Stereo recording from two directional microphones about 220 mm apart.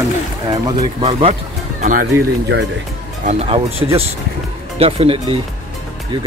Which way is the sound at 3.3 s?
25° right (ahead or behind).